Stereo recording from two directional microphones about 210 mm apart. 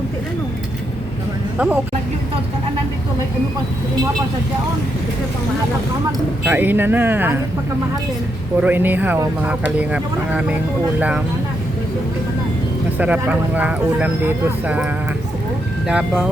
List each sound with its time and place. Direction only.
1.5 s speech: 5° right (ahead or behind)
6.4 s speech: 10° right (ahead or behind)
8.6 s speech: 10° right (ahead or behind)
13.0 s speech: 5° right (ahead or behind)
15.9 s speech: 5° right (ahead or behind)